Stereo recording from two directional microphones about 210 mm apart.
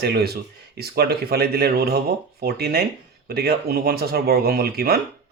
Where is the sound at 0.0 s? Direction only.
50° right (ahead or behind).